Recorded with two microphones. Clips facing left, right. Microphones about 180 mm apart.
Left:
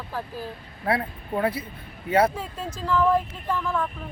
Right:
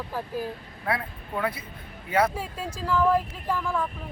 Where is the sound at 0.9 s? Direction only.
30° left (ahead or behind).